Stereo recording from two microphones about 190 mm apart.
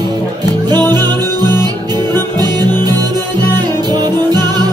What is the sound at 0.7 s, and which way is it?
Music, 20° right (ahead or behind).